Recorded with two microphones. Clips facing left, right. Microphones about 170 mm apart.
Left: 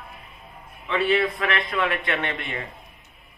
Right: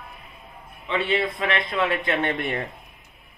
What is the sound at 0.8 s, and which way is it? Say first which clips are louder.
A man's voice: left 2 dB; 25° right (ahead or behind).